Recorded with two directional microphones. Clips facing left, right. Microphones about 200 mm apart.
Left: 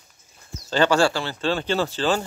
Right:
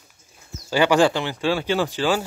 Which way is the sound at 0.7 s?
15° right (ahead or behind).